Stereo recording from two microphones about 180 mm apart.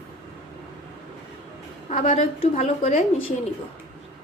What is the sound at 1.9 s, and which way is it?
A woman's voice, 40° left (ahead or behind).